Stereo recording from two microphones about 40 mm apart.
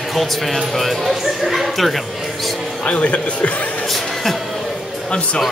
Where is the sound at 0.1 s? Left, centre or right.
Centre.